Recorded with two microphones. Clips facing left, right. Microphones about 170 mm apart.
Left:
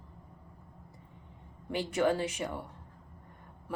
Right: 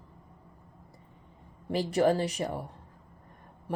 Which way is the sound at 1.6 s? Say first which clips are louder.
Right 4 dB; 35° right (ahead or behind).